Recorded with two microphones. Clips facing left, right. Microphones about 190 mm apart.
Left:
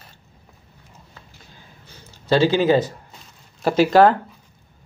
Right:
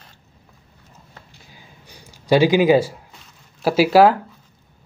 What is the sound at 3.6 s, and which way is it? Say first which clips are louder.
Speech: right 1 dB; 5° right (ahead or behind).